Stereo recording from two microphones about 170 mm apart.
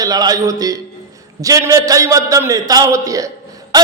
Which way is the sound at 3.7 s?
20° right (ahead or behind).